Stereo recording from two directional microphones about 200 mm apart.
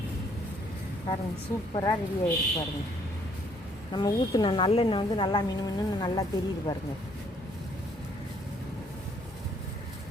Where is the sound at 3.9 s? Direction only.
20° left (ahead or behind).